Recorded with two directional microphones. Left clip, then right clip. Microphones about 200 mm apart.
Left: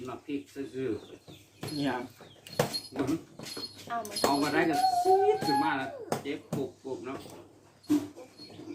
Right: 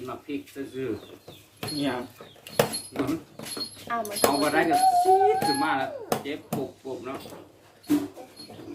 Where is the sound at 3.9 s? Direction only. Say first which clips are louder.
Right 5 dB; 50° right (ahead or behind).